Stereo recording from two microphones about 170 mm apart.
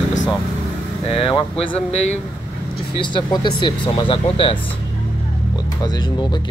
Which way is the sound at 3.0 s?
30° left (ahead or behind).